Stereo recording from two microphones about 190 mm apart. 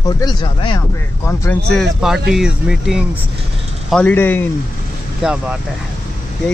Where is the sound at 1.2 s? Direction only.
10° left (ahead or behind).